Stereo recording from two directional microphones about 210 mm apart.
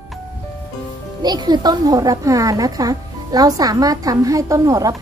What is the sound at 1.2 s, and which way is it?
A child's voice, 20° right (ahead or behind).